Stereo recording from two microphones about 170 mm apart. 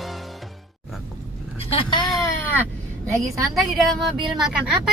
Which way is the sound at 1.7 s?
25° left (ahead or behind).